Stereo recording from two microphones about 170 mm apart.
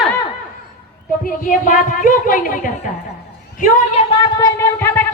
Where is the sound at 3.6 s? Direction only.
35° left (ahead or behind); by 5.1 s 15° left (ahead or behind).